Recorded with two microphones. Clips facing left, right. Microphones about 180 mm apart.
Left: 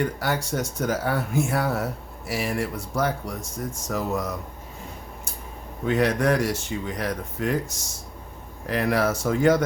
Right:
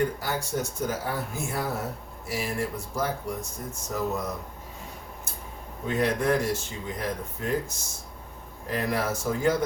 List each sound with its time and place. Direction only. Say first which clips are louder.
0.0 s speech: left 2 dB; 75° left (ahead or behind)
3.8 s speech: left 2 dB; 90° left
5.8 s speech: left 4 dB; 80° left
8.6 s speech: left 5 dB; 80° left